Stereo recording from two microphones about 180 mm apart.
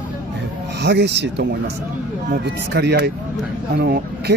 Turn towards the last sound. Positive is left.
turn(degrees=-65)  # may be behind; listen again after turning